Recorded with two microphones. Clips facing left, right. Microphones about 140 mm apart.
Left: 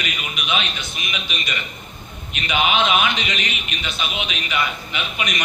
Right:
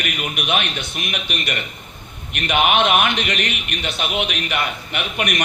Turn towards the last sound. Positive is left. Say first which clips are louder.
# right 3 dB
turn(degrees=-60)  # may be behind; listen again after turning